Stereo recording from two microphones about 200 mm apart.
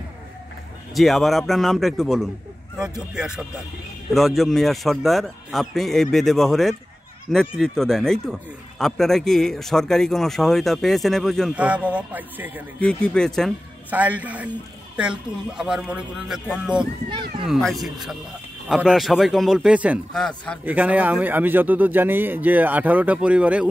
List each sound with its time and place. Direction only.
0.9 s speech: centre (ahead or behind)
12.8 s speech: 5° left (ahead or behind)
17.1 s speech: 25° right (ahead or behind)
17.5 s speech: centre (ahead or behind)
20.2 s speech: 5° left (ahead or behind)
20.6 s a man's voice: 5° right (ahead or behind)